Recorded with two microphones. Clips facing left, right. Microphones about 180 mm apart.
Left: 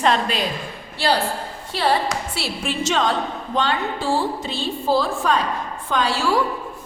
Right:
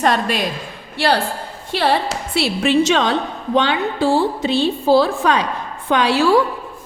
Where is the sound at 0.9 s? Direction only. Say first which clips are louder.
Right 3 dB; 60° right (ahead or behind).